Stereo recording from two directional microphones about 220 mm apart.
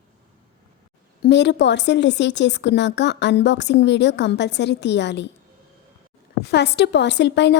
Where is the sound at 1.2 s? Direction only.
50° left (ahead or behind).